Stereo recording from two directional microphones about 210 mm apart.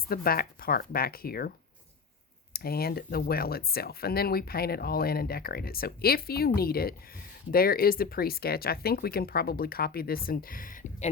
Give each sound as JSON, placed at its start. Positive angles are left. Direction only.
{"t": 0.1, "sound": "speech", "side_deg": 45}